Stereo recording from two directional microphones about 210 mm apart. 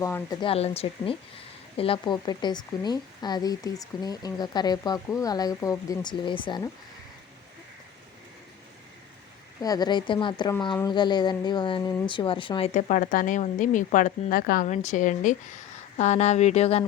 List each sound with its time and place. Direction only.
0.0 s speech: 15° left (ahead or behind)
9.6 s speech: 20° left (ahead or behind)